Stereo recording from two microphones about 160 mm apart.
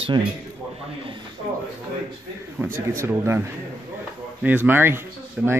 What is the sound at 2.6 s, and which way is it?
Speech, 15° right (ahead or behind).